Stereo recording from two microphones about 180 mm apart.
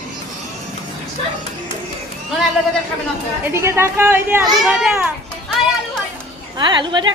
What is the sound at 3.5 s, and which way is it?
A woman's voice, 15° right (ahead or behind).